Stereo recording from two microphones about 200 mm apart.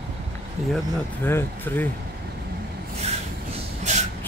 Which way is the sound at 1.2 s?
10° left (ahead or behind).